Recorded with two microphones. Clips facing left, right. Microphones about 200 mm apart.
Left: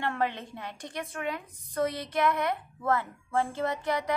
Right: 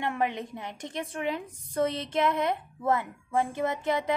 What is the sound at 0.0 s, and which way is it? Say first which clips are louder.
A woman's voice: right 1 dB; 15° right (ahead or behind).